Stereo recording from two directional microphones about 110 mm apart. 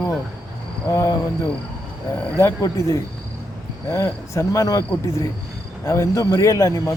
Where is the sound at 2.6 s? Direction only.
30° left (ahead or behind).